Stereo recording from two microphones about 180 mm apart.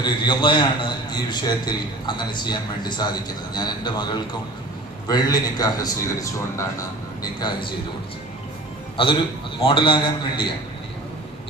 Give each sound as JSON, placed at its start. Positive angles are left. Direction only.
{"t": 0.0, "sound": "a man's voice", "side_deg": 25}
{"t": 9.0, "sound": "a man's voice", "side_deg": 30}